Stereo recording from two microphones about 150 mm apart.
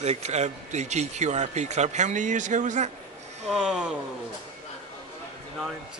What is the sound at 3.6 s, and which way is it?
Speech, 5° right (ahead or behind).